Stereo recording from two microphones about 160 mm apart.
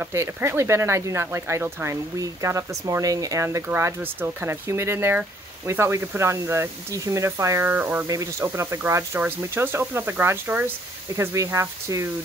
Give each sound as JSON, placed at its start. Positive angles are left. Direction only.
{"t": 0.0, "sound": "speech", "side_deg": -15}